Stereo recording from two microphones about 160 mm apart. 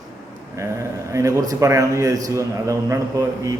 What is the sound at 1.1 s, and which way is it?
A man's voice, 20° right (ahead or behind).